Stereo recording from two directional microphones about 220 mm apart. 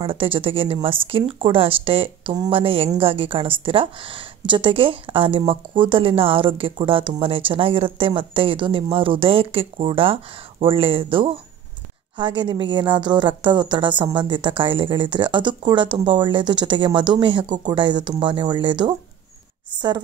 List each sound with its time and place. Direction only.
0.0 s speech: 25° right (ahead or behind)